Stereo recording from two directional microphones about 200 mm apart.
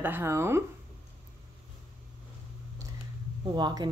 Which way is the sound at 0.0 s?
10° right (ahead or behind).